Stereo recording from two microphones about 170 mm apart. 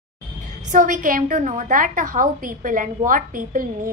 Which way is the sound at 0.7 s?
50° right (ahead or behind).